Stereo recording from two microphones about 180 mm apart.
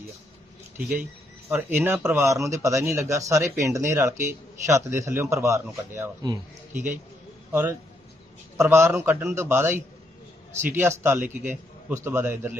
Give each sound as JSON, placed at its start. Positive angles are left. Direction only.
{"t": 1.5, "sound": "speech", "side_deg": -10}
{"t": 6.7, "sound": "speech", "side_deg": -45}
{"t": 7.5, "sound": "speech", "side_deg": -10}